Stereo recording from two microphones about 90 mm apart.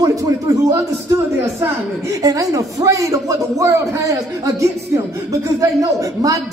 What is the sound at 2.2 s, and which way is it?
A man's voice, 45° right (ahead or behind).